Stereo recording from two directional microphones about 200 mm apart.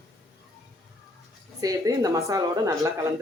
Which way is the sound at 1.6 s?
15° right (ahead or behind).